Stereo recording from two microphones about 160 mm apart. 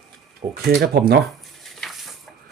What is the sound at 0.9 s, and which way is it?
Speech, 90° right.